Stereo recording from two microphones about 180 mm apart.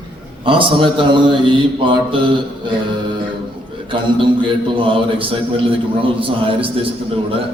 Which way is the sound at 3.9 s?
30° right (ahead or behind).